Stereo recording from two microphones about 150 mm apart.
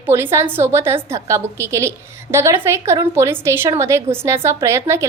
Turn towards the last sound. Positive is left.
turn(degrees=-20)  # may be behind; listen again after turning